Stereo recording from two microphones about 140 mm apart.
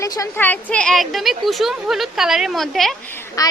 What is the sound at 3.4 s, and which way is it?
Speech, 25° left (ahead or behind).